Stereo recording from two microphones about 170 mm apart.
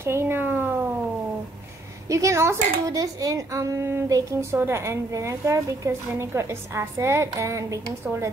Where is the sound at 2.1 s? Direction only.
20° right (ahead or behind).